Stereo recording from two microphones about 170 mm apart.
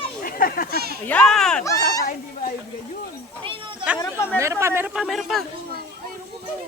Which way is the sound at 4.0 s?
15° left (ahead or behind).